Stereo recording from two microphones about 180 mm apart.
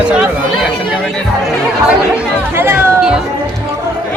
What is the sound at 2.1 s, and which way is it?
Chatter, 10° right (ahead or behind).